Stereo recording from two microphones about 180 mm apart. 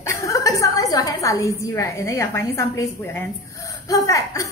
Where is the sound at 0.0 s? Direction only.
15° left (ahead or behind).